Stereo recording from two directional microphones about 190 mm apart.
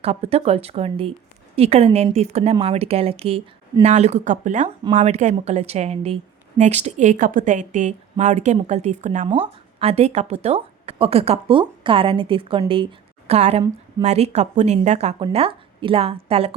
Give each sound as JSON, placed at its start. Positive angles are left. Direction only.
{"t": 0.0, "sound": "a woman's voice", "side_deg": -35}